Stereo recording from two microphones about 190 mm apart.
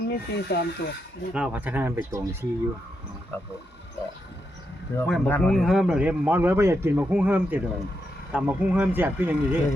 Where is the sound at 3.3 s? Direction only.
10° left (ahead or behind).